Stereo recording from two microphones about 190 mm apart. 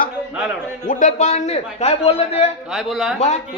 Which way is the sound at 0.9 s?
40° left (ahead or behind).